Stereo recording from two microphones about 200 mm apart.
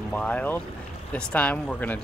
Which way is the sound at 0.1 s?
5° left (ahead or behind).